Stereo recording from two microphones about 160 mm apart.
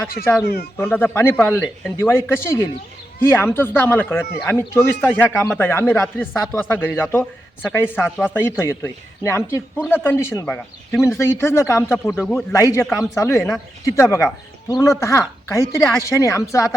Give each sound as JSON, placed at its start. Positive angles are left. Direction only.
{"t": 0.4, "sound": "speech", "side_deg": 80}
{"t": 0.8, "sound": "a man's voice", "side_deg": 10}
{"t": 12.2, "sound": "a man's voice", "side_deg": 0}
{"t": 12.5, "sound": "a woman's voice", "side_deg": 20}